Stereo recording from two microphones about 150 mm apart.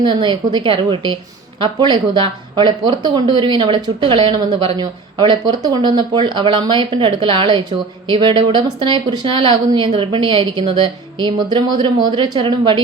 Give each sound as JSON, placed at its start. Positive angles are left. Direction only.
{"t": 0.0, "sound": "speech", "side_deg": -30}